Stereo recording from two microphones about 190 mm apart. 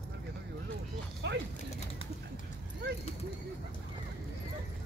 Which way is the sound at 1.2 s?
65° right (ahead or behind).